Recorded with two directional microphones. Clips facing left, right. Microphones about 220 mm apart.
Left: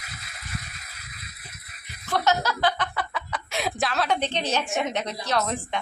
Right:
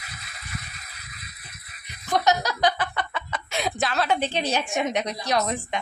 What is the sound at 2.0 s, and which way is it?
Speech, 15° right (ahead or behind).